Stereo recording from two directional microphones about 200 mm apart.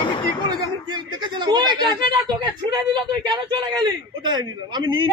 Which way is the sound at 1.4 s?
20° right (ahead or behind).